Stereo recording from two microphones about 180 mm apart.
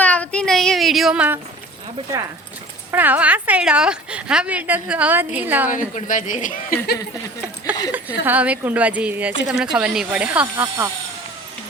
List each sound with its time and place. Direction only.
0.0 s speech: 10° left (ahead or behind)
2.9 s speech: 10° right (ahead or behind)
5.7 s speech: 45° left (ahead or behind)
7.9 s speech: 10° right (ahead or behind)
10.4 s speech: 15° right (ahead or behind)